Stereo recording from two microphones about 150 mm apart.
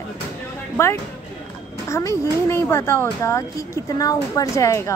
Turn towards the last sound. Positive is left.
turn(degrees=20)  # may be behind; listen again after turning